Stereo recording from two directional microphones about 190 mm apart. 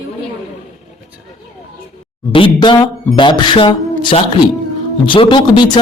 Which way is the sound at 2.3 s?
25° left (ahead or behind).